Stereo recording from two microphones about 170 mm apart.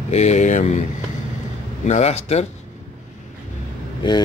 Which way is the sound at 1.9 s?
40° left (ahead or behind).